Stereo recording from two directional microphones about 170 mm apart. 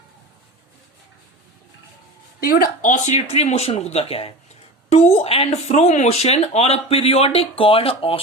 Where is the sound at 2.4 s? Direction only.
60° left (ahead or behind).